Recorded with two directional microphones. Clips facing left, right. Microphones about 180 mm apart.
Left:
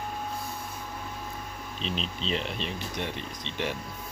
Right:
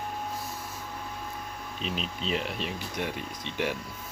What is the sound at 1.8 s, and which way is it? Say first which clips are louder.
Speech: left 1 dB; 10° right (ahead or behind).